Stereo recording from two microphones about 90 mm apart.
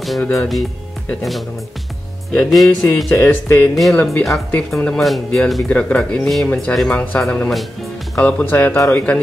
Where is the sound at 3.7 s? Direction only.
Centre (ahead or behind).